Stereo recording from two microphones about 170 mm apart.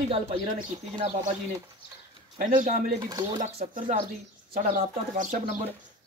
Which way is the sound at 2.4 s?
55° right (ahead or behind).